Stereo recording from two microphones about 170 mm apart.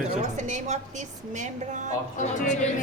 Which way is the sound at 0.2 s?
45° right (ahead or behind).